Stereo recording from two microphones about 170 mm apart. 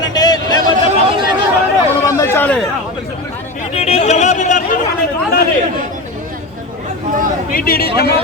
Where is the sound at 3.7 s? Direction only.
40° left (ahead or behind).